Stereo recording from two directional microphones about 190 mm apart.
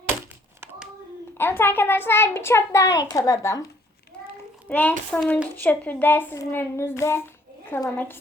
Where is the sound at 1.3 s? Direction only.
10° left (ahead or behind).